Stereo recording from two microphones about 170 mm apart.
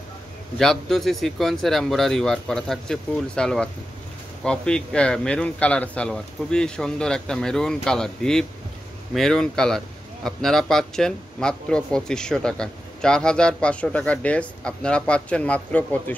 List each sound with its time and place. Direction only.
0.6 s speech: centre (ahead or behind)